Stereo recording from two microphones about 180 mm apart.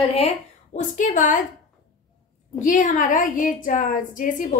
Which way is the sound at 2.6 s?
45° left (ahead or behind).